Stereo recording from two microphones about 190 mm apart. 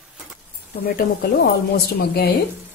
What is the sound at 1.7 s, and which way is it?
Speech, 55° left (ahead or behind).